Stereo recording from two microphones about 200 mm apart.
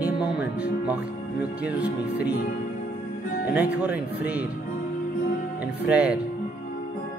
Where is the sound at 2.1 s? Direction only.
55° left (ahead or behind).